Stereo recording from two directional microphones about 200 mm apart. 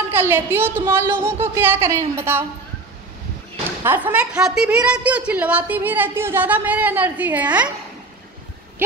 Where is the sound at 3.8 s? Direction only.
10° right (ahead or behind).